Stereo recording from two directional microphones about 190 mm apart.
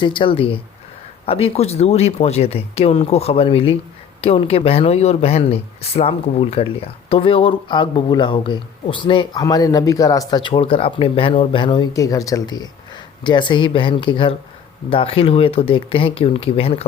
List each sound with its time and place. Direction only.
0.0 s speech: 25° left (ahead or behind)